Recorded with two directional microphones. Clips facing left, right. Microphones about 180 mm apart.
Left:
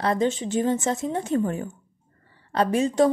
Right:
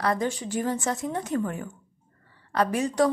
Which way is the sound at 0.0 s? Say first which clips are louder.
Left 3 dB; 25° left (ahead or behind).